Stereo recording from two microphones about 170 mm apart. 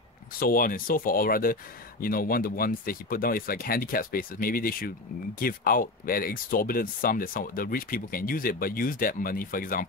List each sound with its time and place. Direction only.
0.4 s speech: 55° left (ahead or behind)